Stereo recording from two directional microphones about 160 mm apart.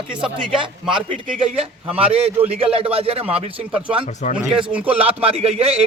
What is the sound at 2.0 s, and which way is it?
A man's voice, 35° right (ahead or behind).